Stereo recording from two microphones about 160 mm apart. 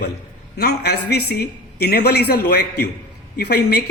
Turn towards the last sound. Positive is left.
turn(degrees=85)